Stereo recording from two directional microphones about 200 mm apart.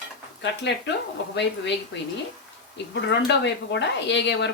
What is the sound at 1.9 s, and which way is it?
Speech, 60° left (ahead or behind).